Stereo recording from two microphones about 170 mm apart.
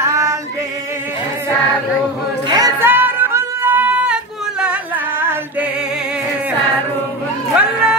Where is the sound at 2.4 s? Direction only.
20° right (ahead or behind).